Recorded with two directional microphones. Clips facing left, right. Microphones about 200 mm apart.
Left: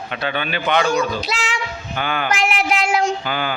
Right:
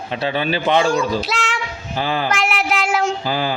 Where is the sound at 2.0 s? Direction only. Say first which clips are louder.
Right 2 dB; 30° right (ahead or behind).